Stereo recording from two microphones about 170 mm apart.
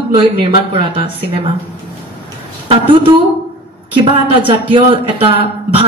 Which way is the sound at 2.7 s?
30° right (ahead or behind).